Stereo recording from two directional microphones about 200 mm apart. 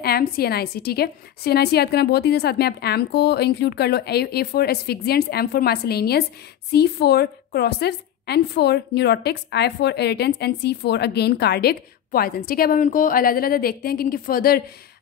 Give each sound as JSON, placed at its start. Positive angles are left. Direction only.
{"t": 0.0, "sound": "a woman's voice", "side_deg": 50}